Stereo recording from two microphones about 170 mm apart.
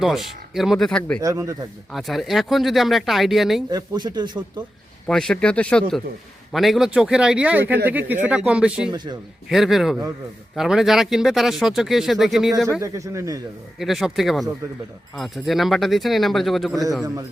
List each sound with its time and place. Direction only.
0.0 s speech: centre (ahead or behind)
1.2 s speech: 20° right (ahead or behind)
1.9 s speech: centre (ahead or behind)
3.7 s speech: 25° right (ahead or behind)
5.0 s speech: 5° left (ahead or behind)
12.8 s speech: 20° right (ahead or behind)
13.7 s speech: centre (ahead or behind)